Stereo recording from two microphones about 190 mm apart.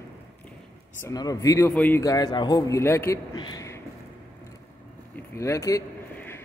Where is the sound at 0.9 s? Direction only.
15° left (ahead or behind).